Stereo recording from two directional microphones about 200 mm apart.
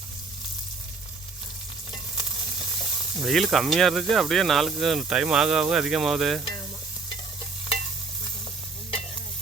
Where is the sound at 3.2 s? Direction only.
Centre (ahead or behind).